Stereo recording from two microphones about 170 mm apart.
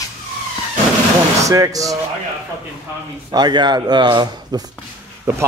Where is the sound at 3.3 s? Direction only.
25° right (ahead or behind).